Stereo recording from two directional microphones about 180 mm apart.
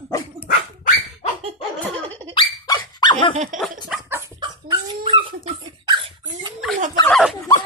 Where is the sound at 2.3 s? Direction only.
25° left (ahead or behind).